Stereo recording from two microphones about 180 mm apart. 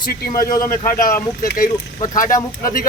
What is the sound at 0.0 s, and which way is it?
Speech, 55° left (ahead or behind).